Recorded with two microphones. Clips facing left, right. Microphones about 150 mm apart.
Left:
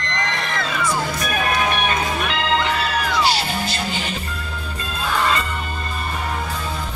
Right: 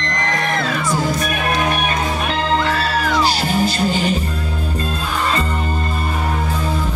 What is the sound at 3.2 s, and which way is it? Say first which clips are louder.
Music: right 4 dB; 40° right (ahead or behind).